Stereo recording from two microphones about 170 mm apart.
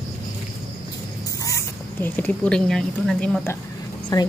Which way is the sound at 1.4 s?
15° left (ahead or behind).